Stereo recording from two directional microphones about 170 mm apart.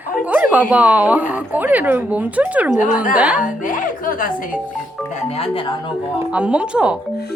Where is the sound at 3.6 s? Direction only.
50° left (ahead or behind).